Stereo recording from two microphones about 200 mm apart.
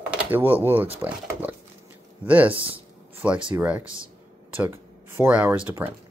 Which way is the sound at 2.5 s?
25° right (ahead or behind).